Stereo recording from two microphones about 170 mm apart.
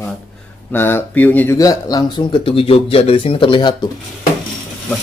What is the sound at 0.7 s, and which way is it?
Speech, 15° left (ahead or behind).